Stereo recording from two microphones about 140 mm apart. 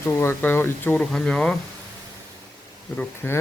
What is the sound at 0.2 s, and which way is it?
Speech, 15° left (ahead or behind).